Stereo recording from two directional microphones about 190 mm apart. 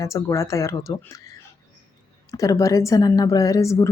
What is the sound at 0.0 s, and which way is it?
Speech, 15° left (ahead or behind).